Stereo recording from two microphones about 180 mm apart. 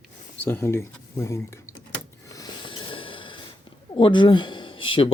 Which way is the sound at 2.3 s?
25° left (ahead or behind).